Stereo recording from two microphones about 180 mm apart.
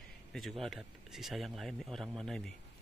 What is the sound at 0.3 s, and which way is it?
Speech, centre (ahead or behind).